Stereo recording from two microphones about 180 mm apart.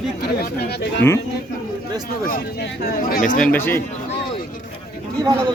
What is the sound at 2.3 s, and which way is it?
Speech, 50° left (ahead or behind).